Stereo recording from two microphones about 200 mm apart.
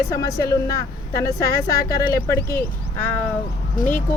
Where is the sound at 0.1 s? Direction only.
15° left (ahead or behind).